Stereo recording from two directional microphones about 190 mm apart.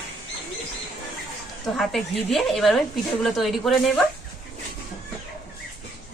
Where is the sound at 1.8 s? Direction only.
Centre (ahead or behind).